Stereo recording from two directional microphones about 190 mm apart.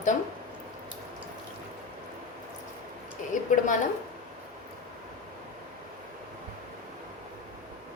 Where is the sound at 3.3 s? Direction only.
40° left (ahead or behind).